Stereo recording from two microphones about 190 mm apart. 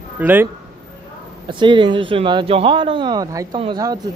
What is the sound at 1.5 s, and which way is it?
Speech, 25° right (ahead or behind).